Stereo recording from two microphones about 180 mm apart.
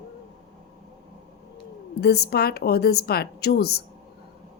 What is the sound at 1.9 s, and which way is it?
A woman's voice, 65° left (ahead or behind).